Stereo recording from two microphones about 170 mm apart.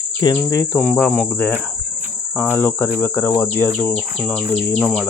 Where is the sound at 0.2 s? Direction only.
20° left (ahead or behind).